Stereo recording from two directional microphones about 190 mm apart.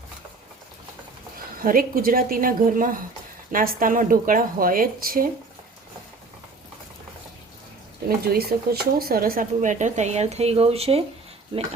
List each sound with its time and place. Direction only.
1.6 s a woman's voice: 50° right (ahead or behind)
8.0 s speech: 55° right (ahead or behind); by 11.7 s 25° right (ahead or behind)